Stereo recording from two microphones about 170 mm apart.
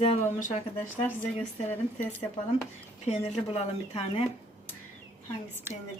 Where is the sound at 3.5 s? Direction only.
35° left (ahead or behind).